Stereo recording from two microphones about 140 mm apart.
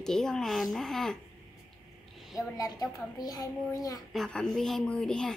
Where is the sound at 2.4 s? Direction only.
25° left (ahead or behind).